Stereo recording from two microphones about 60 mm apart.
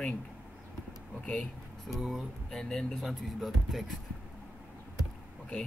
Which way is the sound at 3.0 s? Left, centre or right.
Centre.